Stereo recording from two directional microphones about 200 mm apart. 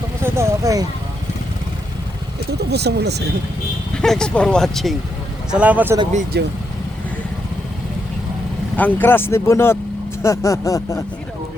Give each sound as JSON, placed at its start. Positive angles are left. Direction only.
{"t": 0.2, "sound": "speech", "side_deg": -15}
{"t": 2.6, "sound": "speech", "side_deg": -55}
{"t": 4.0, "sound": "speech", "side_deg": 5}
{"t": 6.3, "sound": "speech", "side_deg": -55}
{"t": 8.7, "sound": "speech", "side_deg": 10}